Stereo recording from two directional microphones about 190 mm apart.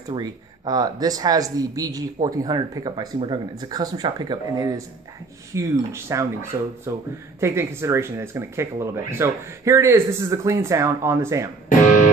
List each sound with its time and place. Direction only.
0.1 s speech: 20° right (ahead or behind)